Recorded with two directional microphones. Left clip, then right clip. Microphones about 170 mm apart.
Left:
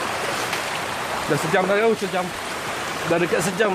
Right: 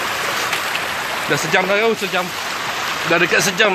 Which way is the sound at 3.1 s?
5° right (ahead or behind).